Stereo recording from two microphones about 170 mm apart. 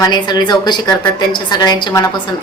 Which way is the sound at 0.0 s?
25° left (ahead or behind).